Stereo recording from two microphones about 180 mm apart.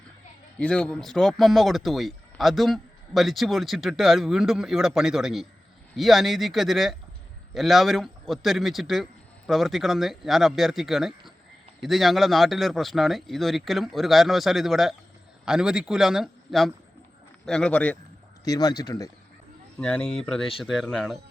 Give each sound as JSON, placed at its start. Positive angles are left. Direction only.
{"t": 0.6, "sound": "speech", "side_deg": 5}
{"t": 18.4, "sound": "speech", "side_deg": 20}
{"t": 19.8, "sound": "speech", "side_deg": 5}